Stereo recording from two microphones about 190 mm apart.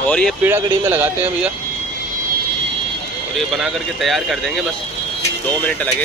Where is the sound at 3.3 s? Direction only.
Centre (ahead or behind).